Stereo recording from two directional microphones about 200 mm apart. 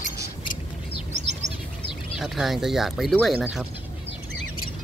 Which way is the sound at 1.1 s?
35° right (ahead or behind).